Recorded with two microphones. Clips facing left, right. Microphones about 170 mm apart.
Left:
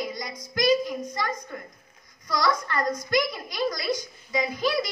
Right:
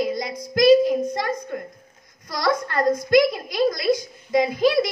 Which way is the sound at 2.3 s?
55° right (ahead or behind).